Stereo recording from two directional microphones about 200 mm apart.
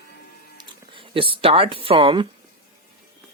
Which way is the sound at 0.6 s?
25° right (ahead or behind).